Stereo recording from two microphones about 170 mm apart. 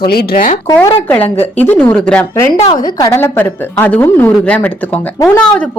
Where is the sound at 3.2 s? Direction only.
10° left (ahead or behind).